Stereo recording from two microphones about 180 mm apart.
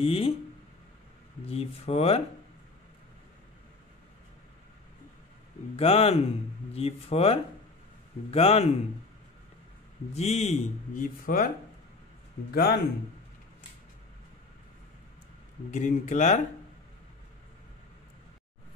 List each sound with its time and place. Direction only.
0.0 s speech: 30° left (ahead or behind)
1.4 s speech: 35° left (ahead or behind)
5.8 s speech: 35° left (ahead or behind)
10.1 s speech: 35° left (ahead or behind); by 11.5 s 50° left (ahead or behind)
12.5 s speech: 60° left (ahead or behind)
15.7 s speech: 45° left (ahead or behind)